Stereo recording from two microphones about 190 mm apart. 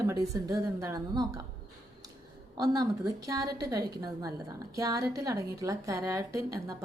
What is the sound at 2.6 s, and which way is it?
A woman's voice, 20° right (ahead or behind).